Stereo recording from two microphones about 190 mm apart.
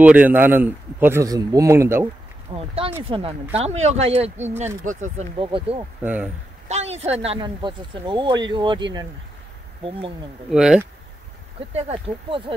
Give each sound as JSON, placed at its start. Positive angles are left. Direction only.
{"t": 0.0, "sound": "a man's voice", "side_deg": -5}
{"t": 2.5, "sound": "speech", "side_deg": -30}
{"t": 6.0, "sound": "a man's voice", "side_deg": -10}
{"t": 6.7, "sound": "speech", "side_deg": -35}
{"t": 10.5, "sound": "speech", "side_deg": -5}
{"t": 11.7, "sound": "speech", "side_deg": -30}